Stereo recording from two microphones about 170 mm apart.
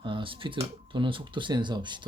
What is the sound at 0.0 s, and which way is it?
Speech, 30° right (ahead or behind).